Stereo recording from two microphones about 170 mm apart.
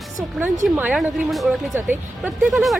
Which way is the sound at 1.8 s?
10° right (ahead or behind).